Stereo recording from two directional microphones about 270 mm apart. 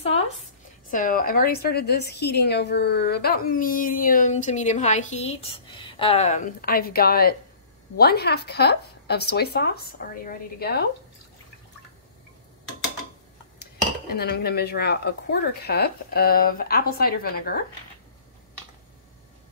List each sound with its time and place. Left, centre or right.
0.9 s a woman's voice: left
13.6 s a woman's voice: left